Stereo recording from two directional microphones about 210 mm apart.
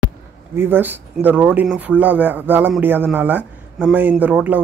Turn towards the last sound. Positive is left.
turn(degrees=-5)  # may be behind; listen again after turning